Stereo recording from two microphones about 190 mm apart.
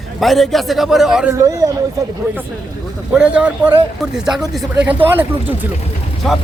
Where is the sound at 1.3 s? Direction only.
15° right (ahead or behind).